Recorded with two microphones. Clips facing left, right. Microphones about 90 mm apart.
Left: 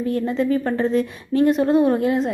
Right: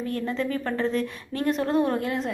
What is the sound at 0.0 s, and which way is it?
A woman's voice, 15° left (ahead or behind).